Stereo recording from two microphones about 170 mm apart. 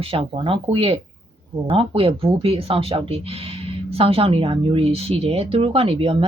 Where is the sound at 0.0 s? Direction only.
30° right (ahead or behind).